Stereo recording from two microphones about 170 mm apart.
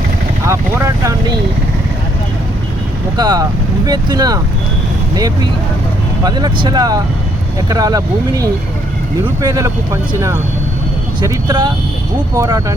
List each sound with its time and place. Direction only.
0.4 s vehicle: 15° right (ahead or behind)
3.2 s speech: 25° right (ahead or behind)
11.2 s speech: 25° right (ahead or behind)